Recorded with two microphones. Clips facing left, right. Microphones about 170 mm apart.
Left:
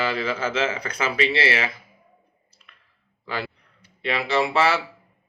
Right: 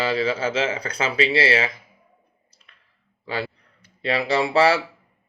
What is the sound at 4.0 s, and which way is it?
Speech, 35° right (ahead or behind).